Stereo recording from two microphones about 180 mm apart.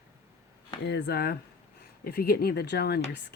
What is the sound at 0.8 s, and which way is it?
Speech, 65° left (ahead or behind).